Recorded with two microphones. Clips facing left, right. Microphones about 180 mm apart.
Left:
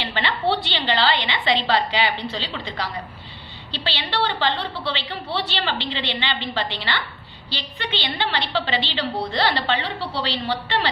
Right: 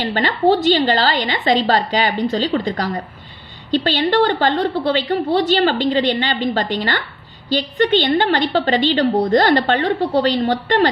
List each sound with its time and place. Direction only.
0.0 s a woman's voice: 45° right (ahead or behind)